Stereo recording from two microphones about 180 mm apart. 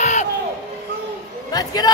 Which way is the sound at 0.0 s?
40° left (ahead or behind).